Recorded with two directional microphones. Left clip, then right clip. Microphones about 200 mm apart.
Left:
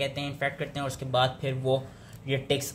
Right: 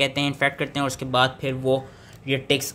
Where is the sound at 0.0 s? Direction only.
40° right (ahead or behind).